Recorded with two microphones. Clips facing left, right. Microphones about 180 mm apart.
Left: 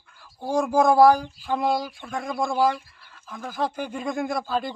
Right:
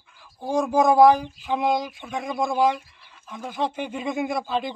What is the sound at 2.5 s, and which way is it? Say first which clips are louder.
Speech: right 1 dB; 20° right (ahead or behind).